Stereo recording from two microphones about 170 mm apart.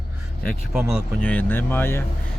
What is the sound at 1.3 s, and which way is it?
Speech, 10° left (ahead or behind).